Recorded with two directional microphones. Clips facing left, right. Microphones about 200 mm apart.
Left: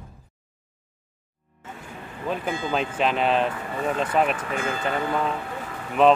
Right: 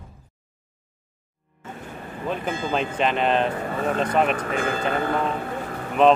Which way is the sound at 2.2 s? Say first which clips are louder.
Even; centre (ahead or behind).